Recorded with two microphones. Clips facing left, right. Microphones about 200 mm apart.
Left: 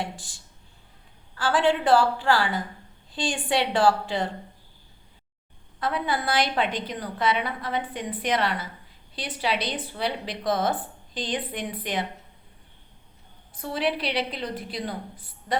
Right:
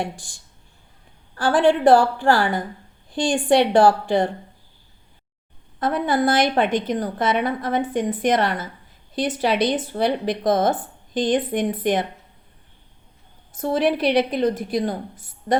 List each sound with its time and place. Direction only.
1.4 s a woman's voice: 50° right (ahead or behind)
5.8 s a woman's voice: 45° right (ahead or behind)
13.6 s a woman's voice: 45° right (ahead or behind)